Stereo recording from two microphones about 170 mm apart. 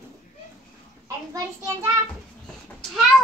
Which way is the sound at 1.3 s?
15° right (ahead or behind).